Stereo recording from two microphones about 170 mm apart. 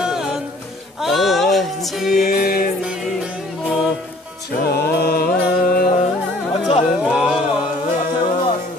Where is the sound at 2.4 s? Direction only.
65° left (ahead or behind).